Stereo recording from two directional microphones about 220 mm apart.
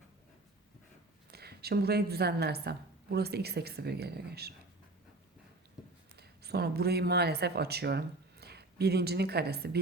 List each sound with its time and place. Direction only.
1.3 s a woman's voice: 45° right (ahead or behind)
5.8 s a sound: centre (ahead or behind)
6.1 s speech: 45° right (ahead or behind)